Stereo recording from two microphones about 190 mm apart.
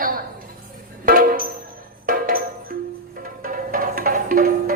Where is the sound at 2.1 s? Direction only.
50° right (ahead or behind).